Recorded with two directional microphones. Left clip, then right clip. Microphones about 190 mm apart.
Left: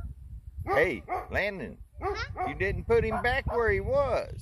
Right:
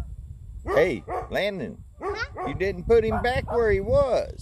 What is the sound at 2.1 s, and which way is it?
Dog, 5° right (ahead or behind).